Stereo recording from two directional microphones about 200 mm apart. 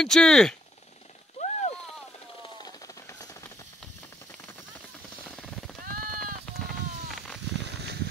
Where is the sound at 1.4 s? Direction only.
35° left (ahead or behind).